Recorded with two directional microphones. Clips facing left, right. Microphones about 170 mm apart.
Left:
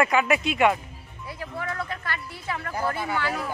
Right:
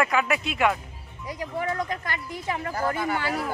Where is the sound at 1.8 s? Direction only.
15° right (ahead or behind).